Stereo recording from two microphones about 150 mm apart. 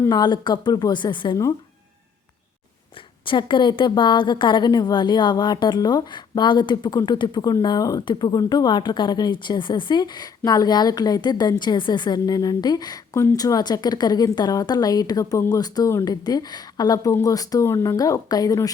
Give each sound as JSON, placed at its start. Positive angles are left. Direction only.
{"t": 0.0, "sound": "a woman's voice", "side_deg": 25}
{"t": 3.2, "sound": "a woman's voice", "side_deg": 30}